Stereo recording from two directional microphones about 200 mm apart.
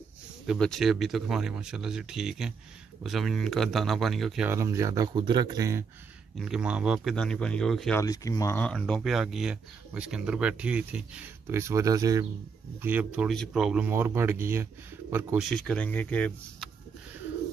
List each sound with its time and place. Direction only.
0.5 s speech: centre (ahead or behind)
4.5 s speech: 15° right (ahead or behind)
6.4 s speech: 5° right (ahead or behind)
8.0 s speech: 15° left (ahead or behind); by 12.3 s 20° right (ahead or behind)
12.8 s speech: 5° right (ahead or behind)
15.4 s speech: 5° left (ahead or behind)